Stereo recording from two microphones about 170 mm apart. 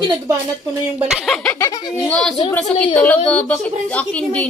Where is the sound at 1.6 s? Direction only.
20° left (ahead or behind).